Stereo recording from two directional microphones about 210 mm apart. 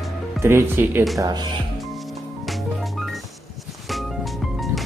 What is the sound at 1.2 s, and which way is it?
Speech, 20° right (ahead or behind).